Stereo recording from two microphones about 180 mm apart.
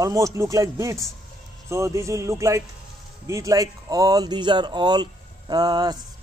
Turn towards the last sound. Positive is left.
turn(degrees=-20)  # may be behind; listen again after turning